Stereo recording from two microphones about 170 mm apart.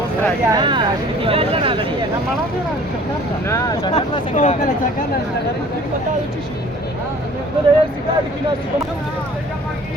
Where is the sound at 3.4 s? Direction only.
20° left (ahead or behind).